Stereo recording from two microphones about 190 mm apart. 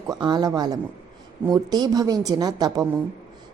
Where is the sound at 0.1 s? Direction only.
25° right (ahead or behind).